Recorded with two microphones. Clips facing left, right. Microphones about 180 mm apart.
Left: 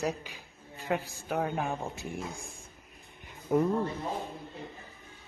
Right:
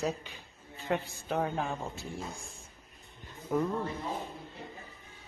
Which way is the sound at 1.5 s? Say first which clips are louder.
Left 2 dB; 15° left (ahead or behind).